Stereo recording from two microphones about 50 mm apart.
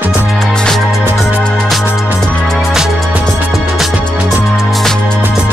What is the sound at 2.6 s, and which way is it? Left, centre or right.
Music, centre.